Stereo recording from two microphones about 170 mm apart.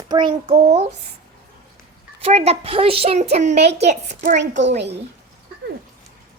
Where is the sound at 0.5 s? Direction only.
40° right (ahead or behind).